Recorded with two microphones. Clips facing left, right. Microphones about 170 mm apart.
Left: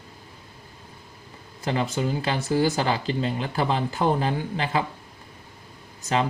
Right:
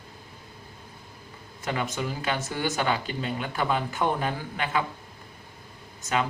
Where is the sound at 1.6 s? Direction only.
30° left (ahead or behind).